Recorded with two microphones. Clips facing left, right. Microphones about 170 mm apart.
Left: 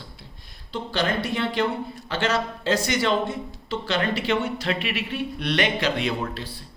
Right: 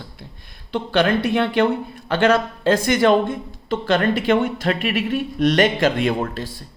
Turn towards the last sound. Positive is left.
turn(degrees=-45)  # may be behind; listen again after turning